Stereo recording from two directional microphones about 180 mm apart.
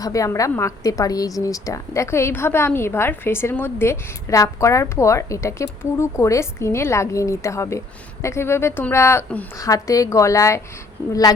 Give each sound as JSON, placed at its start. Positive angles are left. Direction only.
{"t": 0.0, "sound": "a woman's voice", "side_deg": 20}